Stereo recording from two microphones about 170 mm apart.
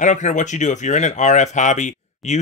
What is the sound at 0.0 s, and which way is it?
Speech, 45° left (ahead or behind).